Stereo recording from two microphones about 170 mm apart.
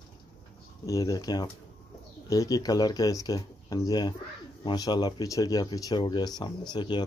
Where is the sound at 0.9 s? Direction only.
20° left (ahead or behind).